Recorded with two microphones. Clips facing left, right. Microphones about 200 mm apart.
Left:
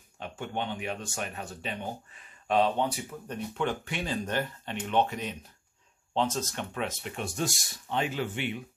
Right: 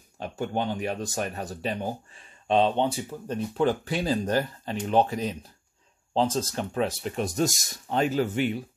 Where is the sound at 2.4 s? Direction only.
25° right (ahead or behind).